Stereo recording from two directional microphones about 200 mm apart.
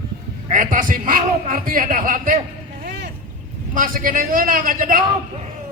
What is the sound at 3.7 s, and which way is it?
A man's voice, 40° right (ahead or behind).